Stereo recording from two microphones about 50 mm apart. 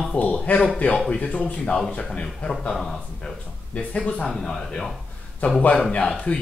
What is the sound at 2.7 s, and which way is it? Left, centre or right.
Speech, centre.